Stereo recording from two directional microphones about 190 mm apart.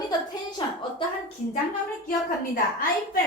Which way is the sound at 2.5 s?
50° left (ahead or behind).